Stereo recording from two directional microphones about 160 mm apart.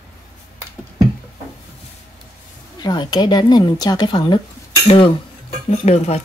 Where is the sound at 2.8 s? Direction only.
25° left (ahead or behind).